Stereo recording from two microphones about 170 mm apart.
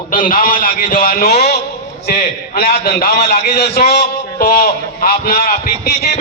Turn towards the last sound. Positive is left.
turn(degrees=75)  # may be behind; listen again after turning